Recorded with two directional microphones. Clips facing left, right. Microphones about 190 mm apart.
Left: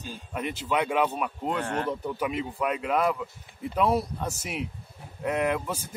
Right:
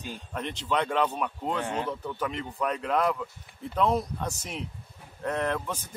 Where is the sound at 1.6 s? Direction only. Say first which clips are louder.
Left 1 dB; 10° right (ahead or behind).